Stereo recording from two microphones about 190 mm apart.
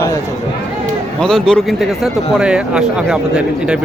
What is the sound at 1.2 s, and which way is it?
Speech, 5° left (ahead or behind).